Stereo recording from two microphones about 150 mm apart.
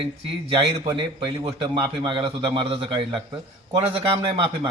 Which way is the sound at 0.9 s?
35° right (ahead or behind).